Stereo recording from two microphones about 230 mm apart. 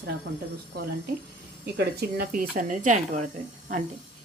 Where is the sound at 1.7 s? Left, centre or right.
Right.